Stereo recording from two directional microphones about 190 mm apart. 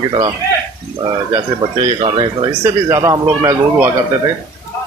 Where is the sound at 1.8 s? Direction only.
25° right (ahead or behind).